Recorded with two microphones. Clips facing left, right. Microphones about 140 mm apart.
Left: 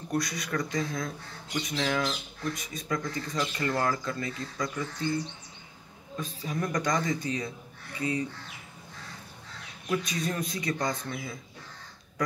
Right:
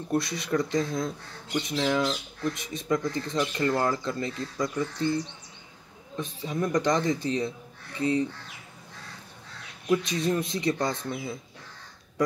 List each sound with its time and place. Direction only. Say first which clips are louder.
0.1 s speech: right 4 dB; 25° right (ahead or behind)
9.8 s speech: right 5 dB; 25° right (ahead or behind)